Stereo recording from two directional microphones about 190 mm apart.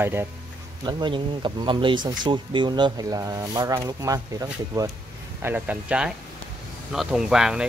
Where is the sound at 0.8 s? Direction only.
25° right (ahead or behind).